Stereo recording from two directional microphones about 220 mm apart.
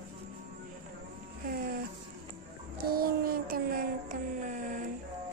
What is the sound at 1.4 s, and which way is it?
Music, 45° right (ahead or behind).